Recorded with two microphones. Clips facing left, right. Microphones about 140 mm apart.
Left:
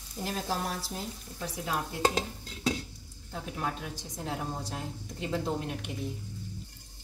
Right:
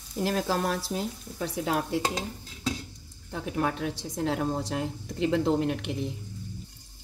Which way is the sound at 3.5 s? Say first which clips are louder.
Right 7 dB; 70° right (ahead or behind).